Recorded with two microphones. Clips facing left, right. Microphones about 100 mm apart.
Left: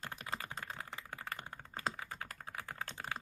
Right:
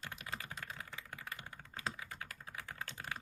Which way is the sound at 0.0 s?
35° left (ahead or behind).